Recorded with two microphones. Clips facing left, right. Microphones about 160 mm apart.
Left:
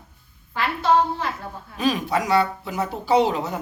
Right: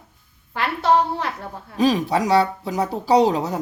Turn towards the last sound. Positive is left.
turn(degrees=-35)  # may be behind; listen again after turning